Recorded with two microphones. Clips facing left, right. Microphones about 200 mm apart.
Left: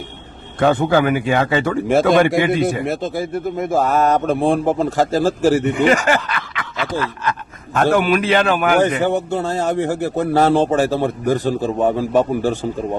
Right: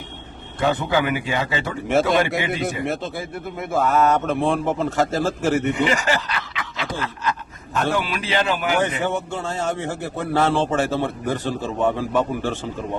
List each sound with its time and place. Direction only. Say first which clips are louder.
0.6 s speech: left 6 dB; 50° left (ahead or behind)
1.9 s speech: left 5 dB; 35° left (ahead or behind)
5.7 s speech: left 6 dB; 55° left (ahead or behind)
9.0 s speech: left 6 dB; 40° left (ahead or behind)